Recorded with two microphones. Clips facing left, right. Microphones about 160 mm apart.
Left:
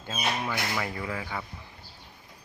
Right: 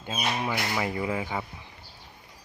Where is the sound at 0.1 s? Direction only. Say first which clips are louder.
Right 2 dB; 20° right (ahead or behind).